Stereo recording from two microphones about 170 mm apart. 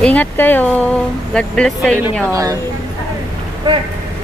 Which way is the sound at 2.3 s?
20° right (ahead or behind).